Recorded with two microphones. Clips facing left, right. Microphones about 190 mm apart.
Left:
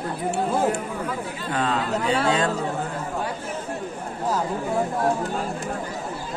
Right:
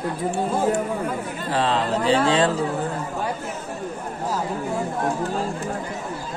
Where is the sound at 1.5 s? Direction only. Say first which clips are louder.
Right 3 dB; 30° right (ahead or behind).